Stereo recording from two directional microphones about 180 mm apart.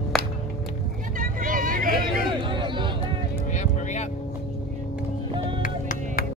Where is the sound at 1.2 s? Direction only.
50° right (ahead or behind).